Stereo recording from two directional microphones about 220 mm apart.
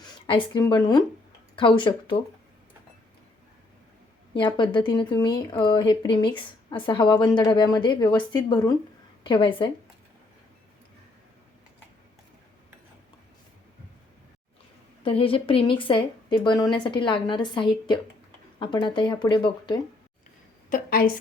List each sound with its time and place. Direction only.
0.0 s speech: 20° left (ahead or behind)
4.4 s speech: 20° left (ahead or behind)
15.0 s speech: 25° left (ahead or behind)
20.7 s a woman's voice: 40° left (ahead or behind)